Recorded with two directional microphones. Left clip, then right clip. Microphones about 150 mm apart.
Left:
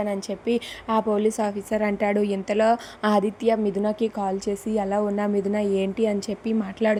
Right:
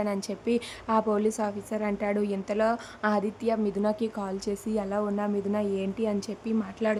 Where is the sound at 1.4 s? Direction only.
20° left (ahead or behind).